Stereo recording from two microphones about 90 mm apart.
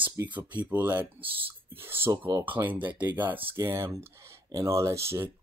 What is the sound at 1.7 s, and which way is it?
Speech, 25° right (ahead or behind).